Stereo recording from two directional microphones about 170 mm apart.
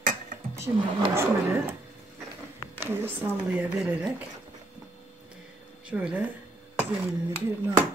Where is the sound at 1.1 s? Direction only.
15° right (ahead or behind).